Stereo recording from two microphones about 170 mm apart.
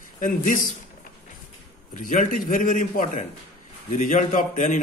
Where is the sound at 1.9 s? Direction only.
50° left (ahead or behind).